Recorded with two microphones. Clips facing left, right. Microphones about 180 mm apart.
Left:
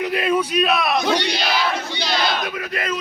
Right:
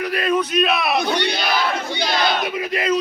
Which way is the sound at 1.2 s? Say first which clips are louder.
Right 1 dB; 55° right (ahead or behind).